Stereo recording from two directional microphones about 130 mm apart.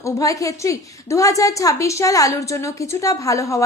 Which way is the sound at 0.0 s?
25° left (ahead or behind).